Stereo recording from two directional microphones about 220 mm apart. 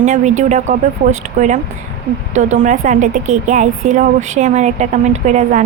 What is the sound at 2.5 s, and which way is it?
Speech, 35° right (ahead or behind).